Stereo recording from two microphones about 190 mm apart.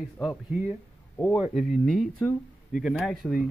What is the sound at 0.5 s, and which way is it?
A man's voice, 10° right (ahead or behind).